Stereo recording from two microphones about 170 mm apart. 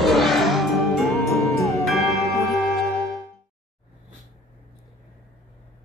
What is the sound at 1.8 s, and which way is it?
Music, centre (ahead or behind).